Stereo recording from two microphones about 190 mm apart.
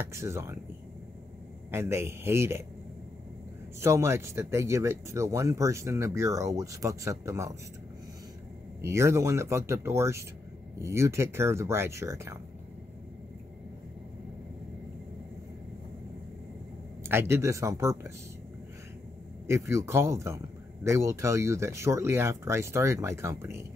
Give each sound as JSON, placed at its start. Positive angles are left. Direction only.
{"t": 0.1, "sound": "speech", "side_deg": -15}
{"t": 1.7, "sound": "speech", "side_deg": -15}
{"t": 3.8, "sound": "speech", "side_deg": -15}
{"t": 8.8, "sound": "speech", "side_deg": -15}
{"t": 17.0, "sound": "speech", "side_deg": -15}
{"t": 19.4, "sound": "speech", "side_deg": -15}